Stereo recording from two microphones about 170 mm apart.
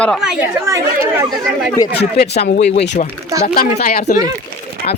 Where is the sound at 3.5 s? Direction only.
50° left (ahead or behind).